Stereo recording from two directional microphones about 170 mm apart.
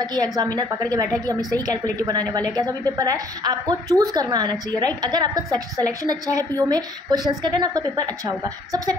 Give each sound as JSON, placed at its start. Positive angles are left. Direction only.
{"t": 0.0, "sound": "a woman's voice", "side_deg": -25}